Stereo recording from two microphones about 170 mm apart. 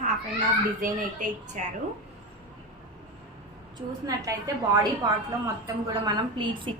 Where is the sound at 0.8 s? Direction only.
45° right (ahead or behind).